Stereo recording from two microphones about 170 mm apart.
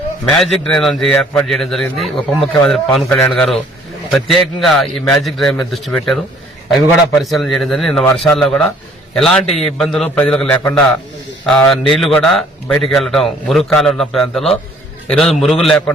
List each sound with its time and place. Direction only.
0.3 s a man's voice: 5° left (ahead or behind)
11.7 s a man's voice: centre (ahead or behind)